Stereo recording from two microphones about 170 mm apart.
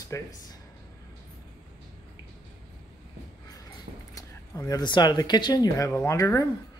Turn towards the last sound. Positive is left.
turn(degrees=20)  # may be behind; listen again after turning